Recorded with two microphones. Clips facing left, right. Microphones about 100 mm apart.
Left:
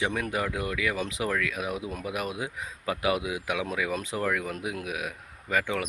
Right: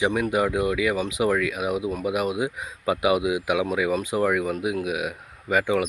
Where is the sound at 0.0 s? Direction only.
10° right (ahead or behind).